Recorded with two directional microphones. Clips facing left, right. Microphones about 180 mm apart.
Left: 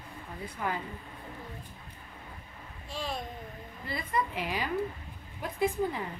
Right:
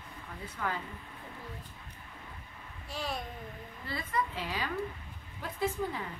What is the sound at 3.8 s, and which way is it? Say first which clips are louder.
A woman's voice: left 2 dB; 15° left (ahead or behind).